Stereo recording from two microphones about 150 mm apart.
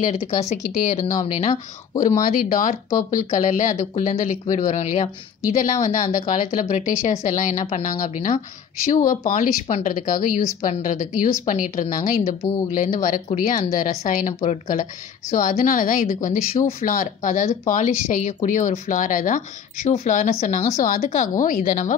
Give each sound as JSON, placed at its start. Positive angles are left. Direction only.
{"t": 0.3, "sound": "speech", "side_deg": 50}
{"t": 2.0, "sound": "speech", "side_deg": 60}
{"t": 7.6, "sound": "speech", "side_deg": 45}
{"t": 8.0, "sound": "speech", "side_deg": 60}
{"t": 20.7, "sound": "speech", "side_deg": 65}